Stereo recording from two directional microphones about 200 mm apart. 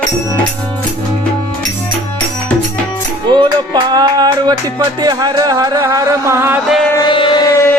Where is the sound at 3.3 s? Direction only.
20° right (ahead or behind).